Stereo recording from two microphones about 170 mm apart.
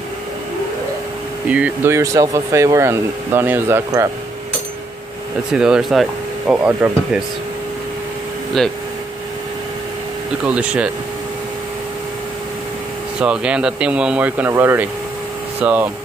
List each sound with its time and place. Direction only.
1.5 s speech: 10° right (ahead or behind)
5.5 s speech: 5° right (ahead or behind)
10.4 s speech: 5° right (ahead or behind)
13.2 s speech: 5° right (ahead or behind)